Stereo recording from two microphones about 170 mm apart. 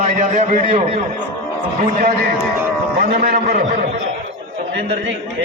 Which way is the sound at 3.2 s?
55° right (ahead or behind).